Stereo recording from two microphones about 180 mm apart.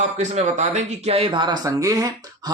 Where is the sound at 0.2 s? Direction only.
40° right (ahead or behind).